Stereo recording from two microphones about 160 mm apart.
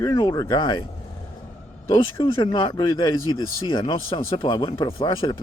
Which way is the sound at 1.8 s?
30° left (ahead or behind).